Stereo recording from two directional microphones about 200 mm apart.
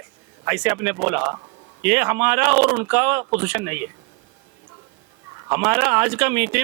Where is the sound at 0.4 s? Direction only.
5° right (ahead or behind).